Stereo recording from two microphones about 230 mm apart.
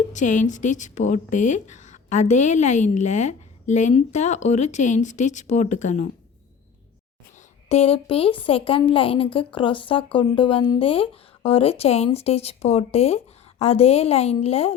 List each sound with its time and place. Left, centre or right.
0.1 s speech: left
7.3 s a woman's voice: left